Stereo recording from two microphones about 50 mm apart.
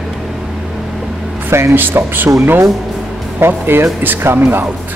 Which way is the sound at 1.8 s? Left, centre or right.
Right.